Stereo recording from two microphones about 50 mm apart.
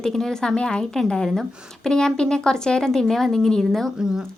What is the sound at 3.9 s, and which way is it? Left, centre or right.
Speech, centre.